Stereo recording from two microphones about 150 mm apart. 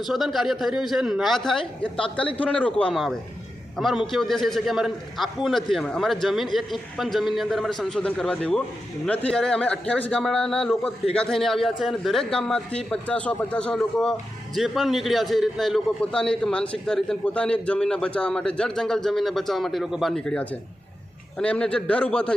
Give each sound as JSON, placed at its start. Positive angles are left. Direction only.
{"t": 0.0, "sound": "a man's voice", "side_deg": 0}